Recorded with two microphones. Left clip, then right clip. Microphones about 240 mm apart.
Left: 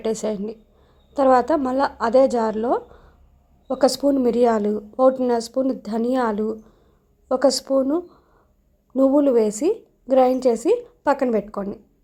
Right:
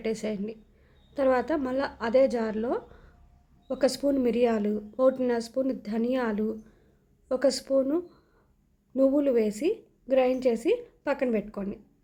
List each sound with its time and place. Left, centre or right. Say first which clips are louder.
0.0 s a woman's voice: left 7 dB; centre